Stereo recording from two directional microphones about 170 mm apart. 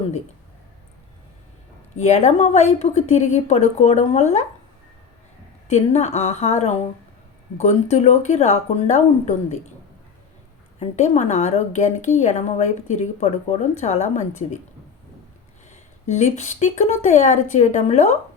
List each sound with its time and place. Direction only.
2.0 s speech: 40° left (ahead or behind)
5.6 s speech: 40° left (ahead or behind)
10.8 s a woman's voice: 40° left (ahead or behind)
15.7 s a woman's voice: 45° left (ahead or behind)